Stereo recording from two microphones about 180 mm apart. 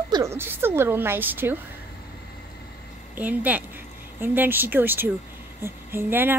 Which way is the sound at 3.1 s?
10° right (ahead or behind).